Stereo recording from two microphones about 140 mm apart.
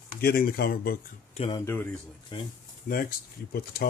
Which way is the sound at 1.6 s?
15° left (ahead or behind).